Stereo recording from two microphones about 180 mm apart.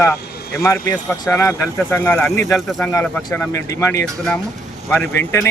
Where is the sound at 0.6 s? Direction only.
15° left (ahead or behind).